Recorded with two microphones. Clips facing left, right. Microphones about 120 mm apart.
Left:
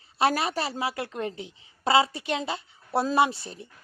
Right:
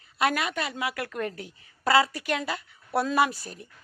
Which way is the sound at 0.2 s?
30° left (ahead or behind).